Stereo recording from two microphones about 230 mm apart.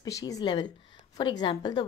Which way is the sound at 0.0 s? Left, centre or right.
Centre.